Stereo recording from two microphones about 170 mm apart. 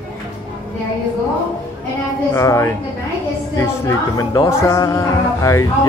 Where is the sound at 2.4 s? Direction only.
15° left (ahead or behind).